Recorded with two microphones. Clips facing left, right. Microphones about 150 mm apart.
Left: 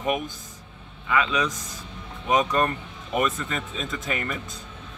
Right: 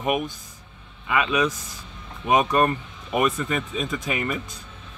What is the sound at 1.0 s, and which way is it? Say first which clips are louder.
Speech: right 2 dB; 20° right (ahead or behind).